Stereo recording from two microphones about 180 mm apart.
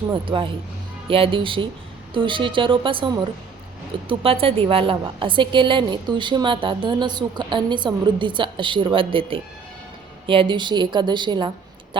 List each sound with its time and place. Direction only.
0.1 s a woman's voice: 25° right (ahead or behind)